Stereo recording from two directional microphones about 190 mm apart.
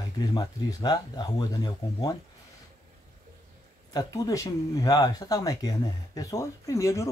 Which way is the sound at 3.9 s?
20° left (ahead or behind).